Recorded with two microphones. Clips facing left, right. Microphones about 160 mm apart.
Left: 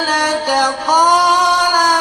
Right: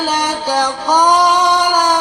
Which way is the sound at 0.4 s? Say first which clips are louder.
Even; 10° left (ahead or behind).